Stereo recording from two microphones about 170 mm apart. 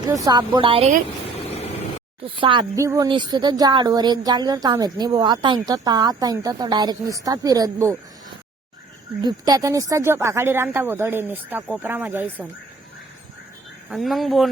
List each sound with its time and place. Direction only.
0.1 s a woman's voice: 25° right (ahead or behind)
2.2 s a woman's voice: 30° right (ahead or behind)
2.7 s a woman's voice: 20° right (ahead or behind)
9.2 s a woman's voice: 20° right (ahead or behind)
13.9 s speech: centre (ahead or behind)